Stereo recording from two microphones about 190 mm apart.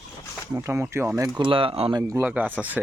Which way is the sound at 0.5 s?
15° right (ahead or behind).